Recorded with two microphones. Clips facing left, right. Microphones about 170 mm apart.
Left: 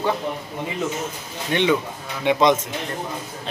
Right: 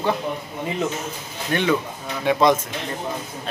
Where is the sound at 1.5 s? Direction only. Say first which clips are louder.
Left 1 dB; 20° left (ahead or behind).